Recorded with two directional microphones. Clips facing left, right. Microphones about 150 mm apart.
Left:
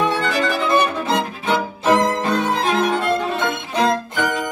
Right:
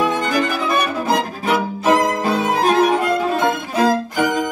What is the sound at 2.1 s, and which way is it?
Violin, 5° right (ahead or behind).